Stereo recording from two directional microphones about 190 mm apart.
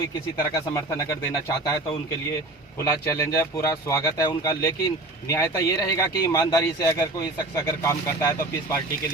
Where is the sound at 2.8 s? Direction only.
15° left (ahead or behind).